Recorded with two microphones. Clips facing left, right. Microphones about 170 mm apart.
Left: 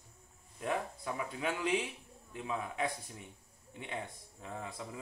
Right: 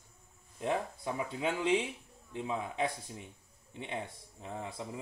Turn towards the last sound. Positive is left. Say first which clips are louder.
# right 2 dB
turn(degrees=-20)  # may be behind; listen again after turning